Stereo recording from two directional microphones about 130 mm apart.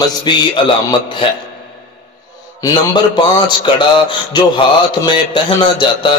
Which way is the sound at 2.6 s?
30° left (ahead or behind).